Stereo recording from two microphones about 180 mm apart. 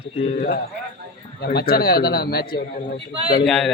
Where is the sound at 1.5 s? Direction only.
55° left (ahead or behind).